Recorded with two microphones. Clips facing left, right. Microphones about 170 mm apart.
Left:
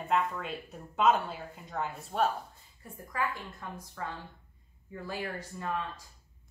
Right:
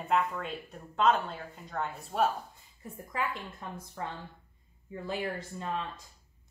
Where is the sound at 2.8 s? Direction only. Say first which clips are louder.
Even; 20° right (ahead or behind).